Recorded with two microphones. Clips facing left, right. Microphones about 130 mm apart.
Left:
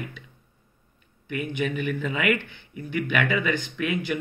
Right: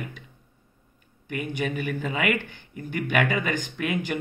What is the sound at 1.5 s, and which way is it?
A man's voice, 40° right (ahead or behind).